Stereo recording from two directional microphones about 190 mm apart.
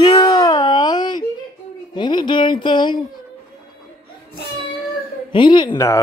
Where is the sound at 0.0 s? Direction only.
20° left (ahead or behind).